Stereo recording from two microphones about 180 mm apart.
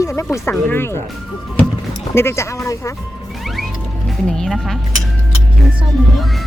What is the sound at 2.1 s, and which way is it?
Speech, 15° left (ahead or behind).